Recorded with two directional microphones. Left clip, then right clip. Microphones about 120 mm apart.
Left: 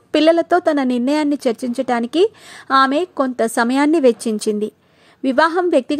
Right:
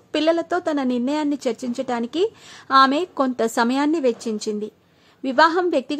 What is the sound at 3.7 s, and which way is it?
A woman's voice, 40° left (ahead or behind).